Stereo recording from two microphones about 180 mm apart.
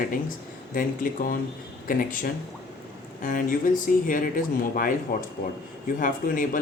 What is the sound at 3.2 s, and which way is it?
Speech, 45° left (ahead or behind).